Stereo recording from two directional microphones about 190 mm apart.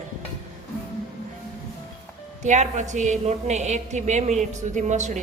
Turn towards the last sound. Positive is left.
turn(degrees=-40)  # may be behind; listen again after turning